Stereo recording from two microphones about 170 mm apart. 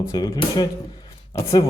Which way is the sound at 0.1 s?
20° left (ahead or behind).